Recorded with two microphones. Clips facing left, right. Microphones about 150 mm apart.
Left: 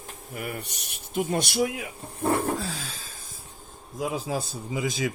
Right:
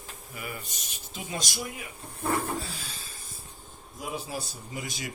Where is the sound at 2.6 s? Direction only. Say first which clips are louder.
Left 6 dB; 90° left.